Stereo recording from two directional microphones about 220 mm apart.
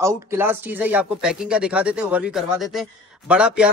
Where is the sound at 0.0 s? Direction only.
10° right (ahead or behind).